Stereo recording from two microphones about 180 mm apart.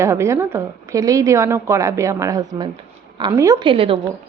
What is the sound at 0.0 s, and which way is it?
A woman's voice, 15° right (ahead or behind).